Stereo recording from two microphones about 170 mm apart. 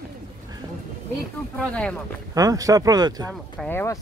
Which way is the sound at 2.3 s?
20° right (ahead or behind).